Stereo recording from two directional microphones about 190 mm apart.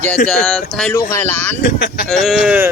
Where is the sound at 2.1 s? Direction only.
Centre (ahead or behind).